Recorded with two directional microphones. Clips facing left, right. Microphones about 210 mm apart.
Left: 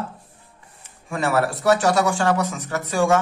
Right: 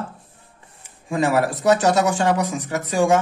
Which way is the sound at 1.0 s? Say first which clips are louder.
Right 2 dB; 15° right (ahead or behind).